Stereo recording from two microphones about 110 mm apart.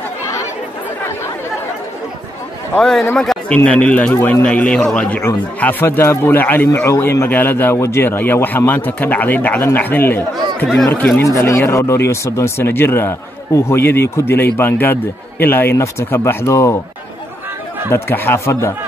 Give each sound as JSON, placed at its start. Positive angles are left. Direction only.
{"t": 2.7, "sound": "a man's voice", "side_deg": 5}
{"t": 11.2, "sound": "a man's voice", "side_deg": 30}
{"t": 17.9, "sound": "a man's voice", "side_deg": 20}